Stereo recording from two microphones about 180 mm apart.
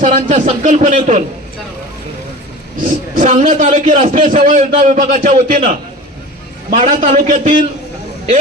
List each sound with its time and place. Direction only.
0.0 s a man's voice: 45° right (ahead or behind)
3.2 s a man's voice: 45° right (ahead or behind)
6.8 s a man's voice: 45° right (ahead or behind)